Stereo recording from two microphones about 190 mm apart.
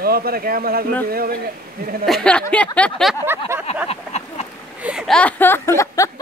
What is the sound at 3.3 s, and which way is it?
Speech, 10° right (ahead or behind).